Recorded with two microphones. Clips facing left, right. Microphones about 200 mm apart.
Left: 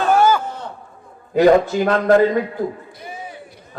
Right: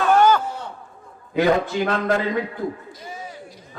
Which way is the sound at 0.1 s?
10° left (ahead or behind).